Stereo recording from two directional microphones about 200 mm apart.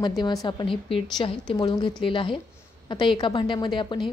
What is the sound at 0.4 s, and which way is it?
A woman's voice, 20° left (ahead or behind).